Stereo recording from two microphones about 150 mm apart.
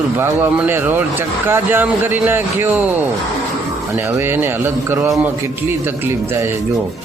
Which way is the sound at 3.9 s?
15° right (ahead or behind).